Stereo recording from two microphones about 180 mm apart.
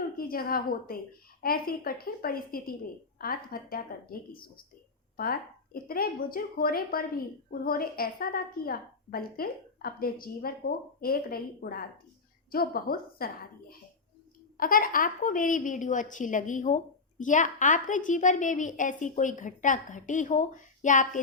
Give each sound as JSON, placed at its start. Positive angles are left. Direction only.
{"t": 0.2, "sound": "a woman's voice", "side_deg": 55}